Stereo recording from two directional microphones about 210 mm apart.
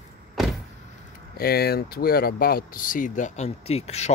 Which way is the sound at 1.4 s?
45° left (ahead or behind).